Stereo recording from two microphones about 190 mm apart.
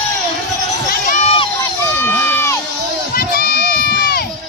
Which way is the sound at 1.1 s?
35° left (ahead or behind).